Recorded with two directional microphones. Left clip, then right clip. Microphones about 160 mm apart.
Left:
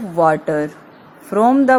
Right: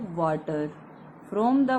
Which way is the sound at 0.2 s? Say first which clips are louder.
Left 12 dB; 35° left (ahead or behind).